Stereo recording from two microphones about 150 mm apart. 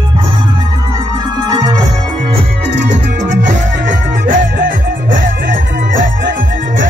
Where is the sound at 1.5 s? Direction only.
25° right (ahead or behind).